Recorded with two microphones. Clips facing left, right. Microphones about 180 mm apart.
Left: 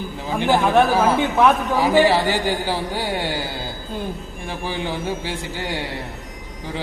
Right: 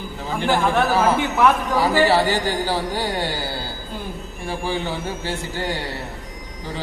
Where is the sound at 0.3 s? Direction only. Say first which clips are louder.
Left 3 dB; 15° left (ahead or behind).